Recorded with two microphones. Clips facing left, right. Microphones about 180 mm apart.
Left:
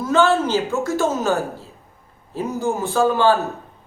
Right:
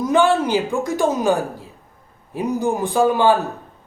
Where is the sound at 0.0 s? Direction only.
15° right (ahead or behind).